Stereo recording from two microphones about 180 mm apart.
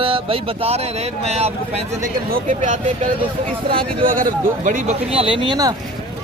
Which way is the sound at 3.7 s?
30° right (ahead or behind).